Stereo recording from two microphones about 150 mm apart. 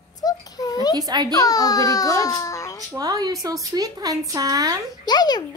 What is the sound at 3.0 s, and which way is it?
Speech, 25° right (ahead or behind).